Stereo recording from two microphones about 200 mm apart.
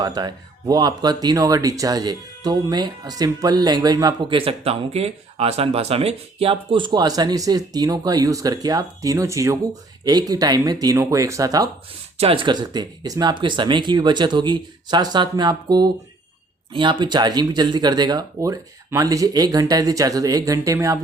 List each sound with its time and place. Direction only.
0.0 s speech: 20° right (ahead or behind)
12.1 s speech: 30° right (ahead or behind)